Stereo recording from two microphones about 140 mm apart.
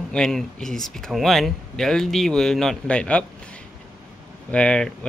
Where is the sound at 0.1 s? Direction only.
5° left (ahead or behind).